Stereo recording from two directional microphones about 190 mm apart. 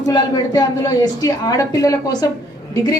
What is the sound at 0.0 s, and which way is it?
A woman's voice, 20° left (ahead or behind).